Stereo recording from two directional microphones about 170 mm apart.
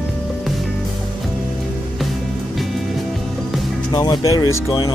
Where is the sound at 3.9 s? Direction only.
25° left (ahead or behind).